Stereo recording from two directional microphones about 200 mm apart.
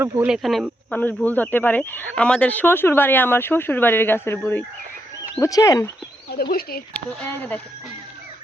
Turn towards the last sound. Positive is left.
turn(degrees=10)  # may be behind; listen again after turning